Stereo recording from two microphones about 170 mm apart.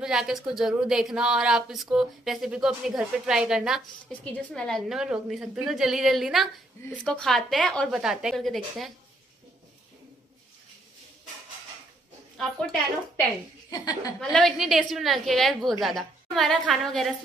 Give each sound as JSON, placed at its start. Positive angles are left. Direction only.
{"t": 0.0, "sound": "a woman's voice", "side_deg": -5}
{"t": 13.7, "sound": "a woman's voice", "side_deg": 25}
{"t": 14.3, "sound": "a woman's voice", "side_deg": 0}